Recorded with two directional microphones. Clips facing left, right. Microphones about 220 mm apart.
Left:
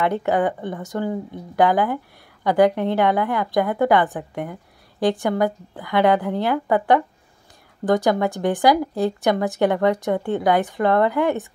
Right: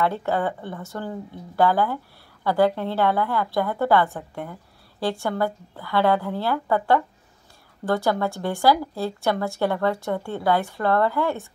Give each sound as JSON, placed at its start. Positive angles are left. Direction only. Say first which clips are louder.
{"t": 0.0, "sound": "a woman's voice", "louder": "left 4 dB", "side_deg": 15}